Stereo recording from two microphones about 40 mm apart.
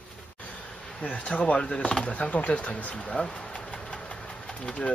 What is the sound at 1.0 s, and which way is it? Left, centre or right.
Speech, left.